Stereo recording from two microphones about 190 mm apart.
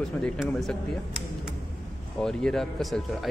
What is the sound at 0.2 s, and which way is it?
Speech, centre (ahead or behind).